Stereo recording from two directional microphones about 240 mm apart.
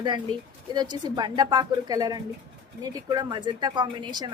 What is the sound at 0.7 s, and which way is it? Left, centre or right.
Speech, centre.